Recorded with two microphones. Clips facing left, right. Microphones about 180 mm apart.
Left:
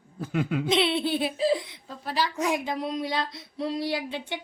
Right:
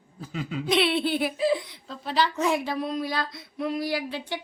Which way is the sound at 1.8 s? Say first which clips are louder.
Right 3 dB; 10° left (ahead or behind).